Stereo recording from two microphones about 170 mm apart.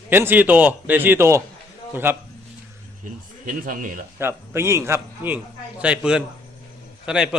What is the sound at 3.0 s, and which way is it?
Speech, 55° right (ahead or behind).